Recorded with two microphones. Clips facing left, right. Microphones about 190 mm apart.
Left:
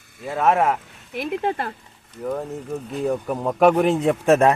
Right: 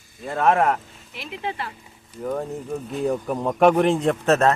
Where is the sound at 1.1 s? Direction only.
50° left (ahead or behind).